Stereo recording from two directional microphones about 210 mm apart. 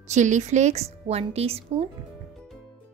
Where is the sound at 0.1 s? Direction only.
35° right (ahead or behind).